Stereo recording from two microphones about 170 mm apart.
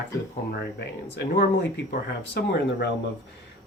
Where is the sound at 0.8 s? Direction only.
80° left.